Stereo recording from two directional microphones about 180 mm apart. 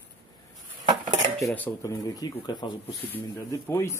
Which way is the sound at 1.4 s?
15° left (ahead or behind).